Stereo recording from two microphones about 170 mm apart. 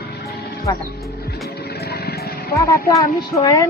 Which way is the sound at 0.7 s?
20° left (ahead or behind).